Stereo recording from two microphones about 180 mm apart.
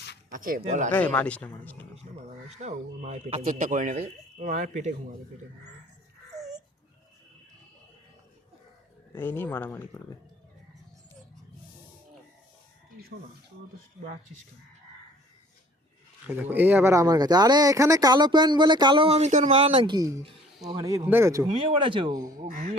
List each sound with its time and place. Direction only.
0.3 s speech: 50° right (ahead or behind)
0.6 s speech: 40° right (ahead or behind)
0.9 s speech: 10° left (ahead or behind)
2.0 s speech: 40° right (ahead or behind)
6.3 s babbling: 40° right (ahead or behind)
9.1 s speech: 10° left (ahead or behind)
16.2 s speech: 10° right (ahead or behind); by 20.0 s 30° right (ahead or behind)
20.0 s speech: 15° right (ahead or behind)
21.7 s speech: 30° right (ahead or behind)